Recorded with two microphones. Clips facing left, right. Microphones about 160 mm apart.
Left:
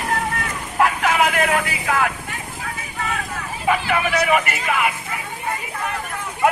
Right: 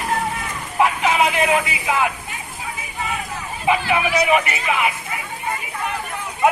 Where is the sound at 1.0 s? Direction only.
20° right (ahead or behind).